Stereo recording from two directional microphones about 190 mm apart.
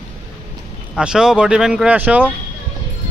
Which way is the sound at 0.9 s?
5° right (ahead or behind).